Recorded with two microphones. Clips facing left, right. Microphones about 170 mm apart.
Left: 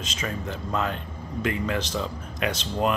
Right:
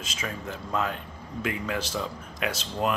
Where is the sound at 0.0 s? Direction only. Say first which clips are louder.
Left 3 dB; 5° right (ahead or behind).